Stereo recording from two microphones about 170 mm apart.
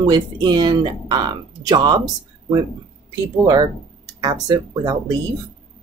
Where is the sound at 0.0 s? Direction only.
25° right (ahead or behind).